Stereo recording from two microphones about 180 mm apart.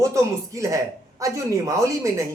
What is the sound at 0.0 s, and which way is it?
Speech, 15° right (ahead or behind).